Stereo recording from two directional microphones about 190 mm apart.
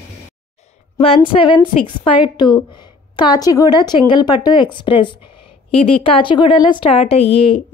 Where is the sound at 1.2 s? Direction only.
25° left (ahead or behind).